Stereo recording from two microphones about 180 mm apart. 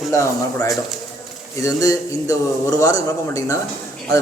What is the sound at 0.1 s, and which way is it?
A man's voice, 15° left (ahead or behind).